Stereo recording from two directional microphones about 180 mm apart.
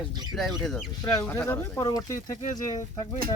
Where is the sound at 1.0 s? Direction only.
10° left (ahead or behind).